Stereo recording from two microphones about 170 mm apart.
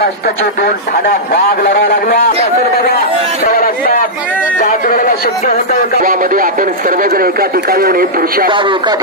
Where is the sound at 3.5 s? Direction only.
60° left (ahead or behind).